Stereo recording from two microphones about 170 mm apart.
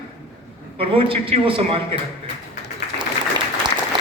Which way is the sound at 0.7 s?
30° right (ahead or behind).